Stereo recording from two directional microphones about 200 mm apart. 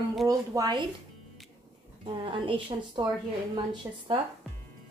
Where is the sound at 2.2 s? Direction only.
25° right (ahead or behind).